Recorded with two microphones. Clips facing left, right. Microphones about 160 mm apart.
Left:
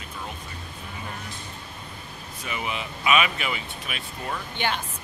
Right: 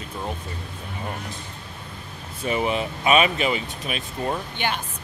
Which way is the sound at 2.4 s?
35° right (ahead or behind).